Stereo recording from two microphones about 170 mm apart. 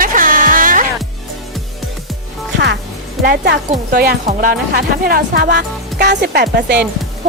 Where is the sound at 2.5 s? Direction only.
85° right.